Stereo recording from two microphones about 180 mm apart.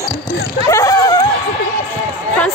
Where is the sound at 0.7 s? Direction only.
15° left (ahead or behind).